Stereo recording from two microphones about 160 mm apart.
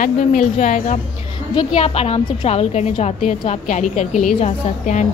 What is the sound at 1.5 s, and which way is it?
A woman's voice, 40° left (ahead or behind).